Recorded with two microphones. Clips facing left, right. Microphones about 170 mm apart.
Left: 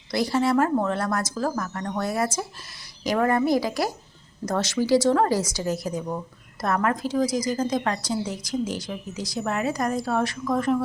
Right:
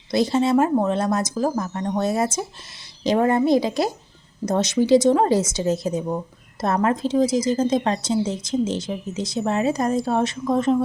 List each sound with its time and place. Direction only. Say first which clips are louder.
0.1 s a woman's voice: right 4 dB; 20° right (ahead or behind)